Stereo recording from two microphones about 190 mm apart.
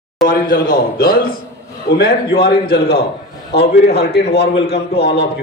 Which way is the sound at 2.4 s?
55° left (ahead or behind).